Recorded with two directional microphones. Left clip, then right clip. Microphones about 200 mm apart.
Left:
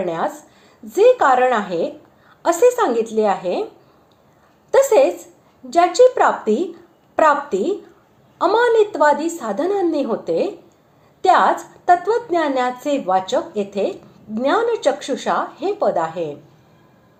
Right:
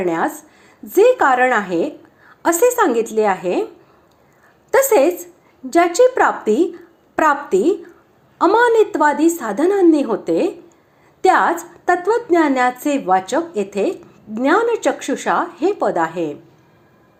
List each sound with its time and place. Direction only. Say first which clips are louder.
0.0 s a woman's voice: right 3 dB; 30° right (ahead or behind)
4.7 s a woman's voice: even; 30° right (ahead or behind)